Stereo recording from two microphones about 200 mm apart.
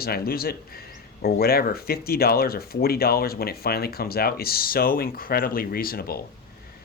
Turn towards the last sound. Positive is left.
turn(degrees=50)  # may be behind; listen again after turning